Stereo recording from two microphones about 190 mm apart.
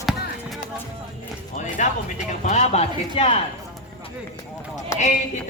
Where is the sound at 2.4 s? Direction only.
35° left (ahead or behind).